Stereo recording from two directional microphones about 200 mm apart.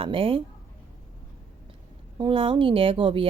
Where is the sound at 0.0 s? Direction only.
25° right (ahead or behind).